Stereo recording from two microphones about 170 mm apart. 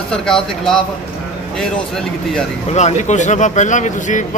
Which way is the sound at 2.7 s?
40° left (ahead or behind).